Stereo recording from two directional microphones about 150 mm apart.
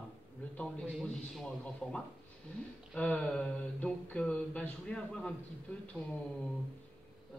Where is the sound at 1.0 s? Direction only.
5° left (ahead or behind).